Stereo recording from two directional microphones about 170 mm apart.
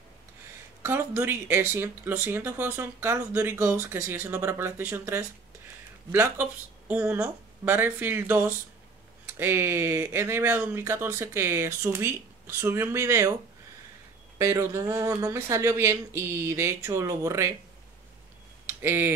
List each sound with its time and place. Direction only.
0.8 s speech: 15° right (ahead or behind)
14.4 s speech: 15° right (ahead or behind)
18.7 s speech: 15° right (ahead or behind)